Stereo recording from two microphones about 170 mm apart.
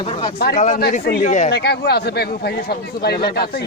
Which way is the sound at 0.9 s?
65° left (ahead or behind).